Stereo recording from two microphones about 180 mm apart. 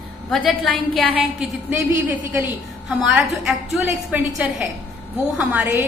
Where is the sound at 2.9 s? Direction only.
Centre (ahead or behind).